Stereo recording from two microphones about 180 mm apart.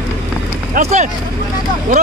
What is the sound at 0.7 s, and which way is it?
Speech, 40° right (ahead or behind).